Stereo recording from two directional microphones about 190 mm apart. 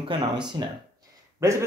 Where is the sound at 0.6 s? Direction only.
20° right (ahead or behind).